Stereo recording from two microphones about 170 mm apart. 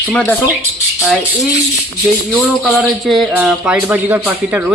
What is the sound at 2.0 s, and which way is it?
Speech, 5° right (ahead or behind).